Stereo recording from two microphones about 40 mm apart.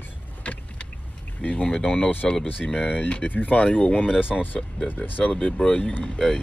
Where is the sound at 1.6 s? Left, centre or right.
Left.